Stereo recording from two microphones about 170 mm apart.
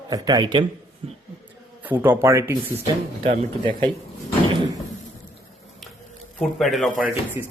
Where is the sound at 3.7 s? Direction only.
30° right (ahead or behind).